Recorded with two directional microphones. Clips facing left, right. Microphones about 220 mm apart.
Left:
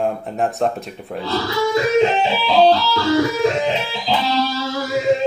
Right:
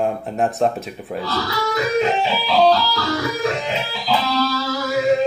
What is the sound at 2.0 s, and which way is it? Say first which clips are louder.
Music: left 3 dB; 25° left (ahead or behind).